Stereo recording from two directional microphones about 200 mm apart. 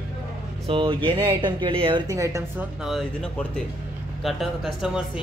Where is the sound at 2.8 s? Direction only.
Centre (ahead or behind).